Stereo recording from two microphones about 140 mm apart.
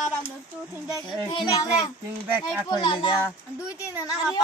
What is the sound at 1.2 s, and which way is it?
A child's voice, 25° left (ahead or behind).